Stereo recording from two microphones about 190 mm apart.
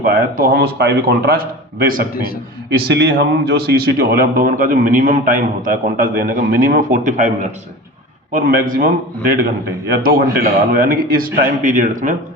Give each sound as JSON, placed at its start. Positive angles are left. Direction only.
{"t": 0.0, "sound": "a man's voice", "side_deg": -50}
{"t": 8.3, "sound": "a man's voice", "side_deg": -45}
{"t": 10.1, "sound": "a man's voice", "side_deg": -45}